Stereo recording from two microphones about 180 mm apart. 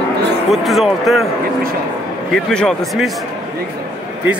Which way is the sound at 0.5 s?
Centre (ahead or behind).